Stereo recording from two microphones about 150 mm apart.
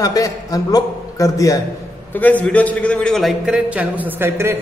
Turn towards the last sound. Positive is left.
turn(degrees=-15)  # may be behind; listen again after turning